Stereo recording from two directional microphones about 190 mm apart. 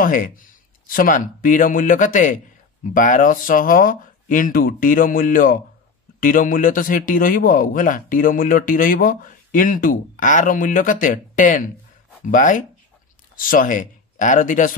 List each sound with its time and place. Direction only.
0.0 s speech: 45° left (ahead or behind)